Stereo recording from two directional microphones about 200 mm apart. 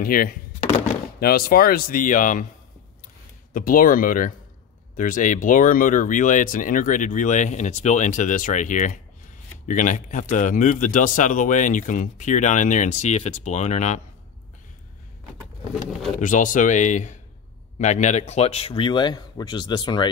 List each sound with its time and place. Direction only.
0.0 s speech: 45° left (ahead or behind)
3.5 s speech: 45° left (ahead or behind)
16.2 s speech: 40° left (ahead or behind); by 20.1 s 20° left (ahead or behind)